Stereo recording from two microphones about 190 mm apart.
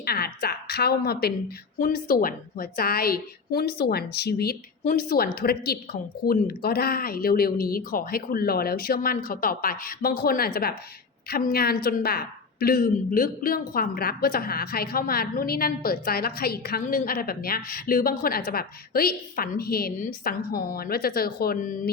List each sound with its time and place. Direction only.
0.0 s a woman's voice: 55° left (ahead or behind)